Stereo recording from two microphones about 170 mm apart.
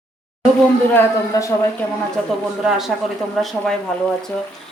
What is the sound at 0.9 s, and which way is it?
Speech, 20° left (ahead or behind).